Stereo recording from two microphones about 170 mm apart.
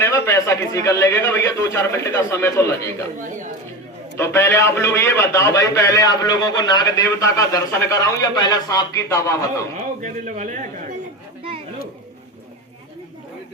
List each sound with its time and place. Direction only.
0.0 s a man's voice: 15° left (ahead or behind)
4.2 s a man's voice: 15° left (ahead or behind)
9.7 s speech: 45° right (ahead or behind)